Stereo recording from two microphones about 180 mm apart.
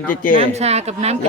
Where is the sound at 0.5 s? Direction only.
35° right (ahead or behind).